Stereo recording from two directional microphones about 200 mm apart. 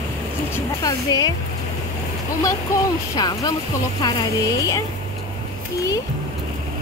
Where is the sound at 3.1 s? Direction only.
20° left (ahead or behind).